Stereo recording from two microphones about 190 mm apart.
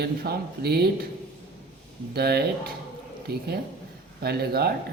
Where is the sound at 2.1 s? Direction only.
55° right (ahead or behind).